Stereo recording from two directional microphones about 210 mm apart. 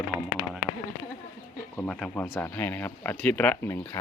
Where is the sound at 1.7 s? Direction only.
5° left (ahead or behind).